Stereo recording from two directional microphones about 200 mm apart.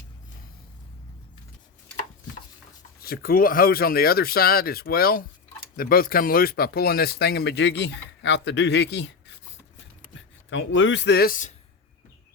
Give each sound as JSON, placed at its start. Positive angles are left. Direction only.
{"t": 3.0, "sound": "speech", "side_deg": 50}
{"t": 10.2, "sound": "speech", "side_deg": 70}